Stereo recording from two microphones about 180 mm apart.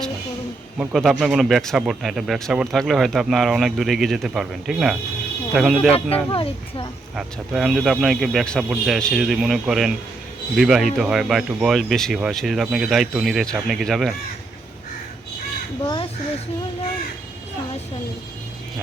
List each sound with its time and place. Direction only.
0.8 s speech: centre (ahead or behind)
6.3 s speech: 30° left (ahead or behind)
7.2 s speech: centre (ahead or behind)